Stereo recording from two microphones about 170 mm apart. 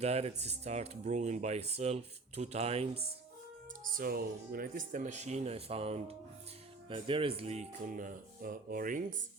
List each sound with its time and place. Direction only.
0.0 s speech: 40° right (ahead or behind)
3.8 s speech: 55° right (ahead or behind)